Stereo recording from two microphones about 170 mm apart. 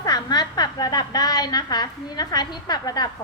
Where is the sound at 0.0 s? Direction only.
25° left (ahead or behind).